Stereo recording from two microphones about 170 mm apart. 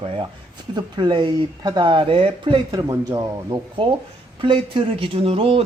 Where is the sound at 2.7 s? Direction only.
20° right (ahead or behind).